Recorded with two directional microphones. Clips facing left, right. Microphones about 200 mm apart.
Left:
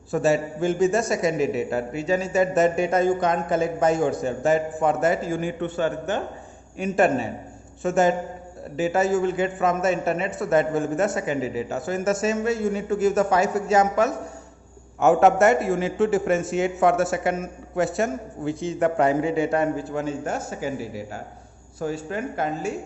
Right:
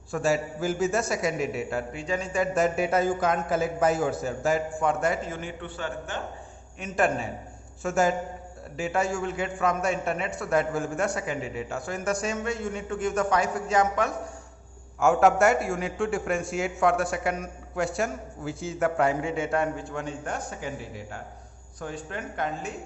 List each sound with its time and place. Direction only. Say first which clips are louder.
0.1 s a man's voice: left 4 dB; centre (ahead or behind)
5.5 s a man's voice: left 11 dB; 45° left (ahead or behind)
7.8 s a man's voice: left 4 dB; centre (ahead or behind)